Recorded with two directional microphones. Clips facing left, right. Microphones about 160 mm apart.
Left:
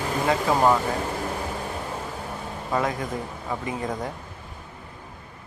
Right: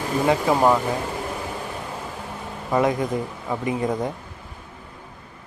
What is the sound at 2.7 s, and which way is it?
Speech, 20° right (ahead or behind).